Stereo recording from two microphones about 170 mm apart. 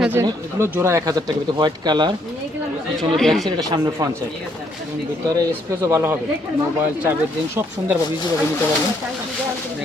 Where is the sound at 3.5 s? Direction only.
25° right (ahead or behind).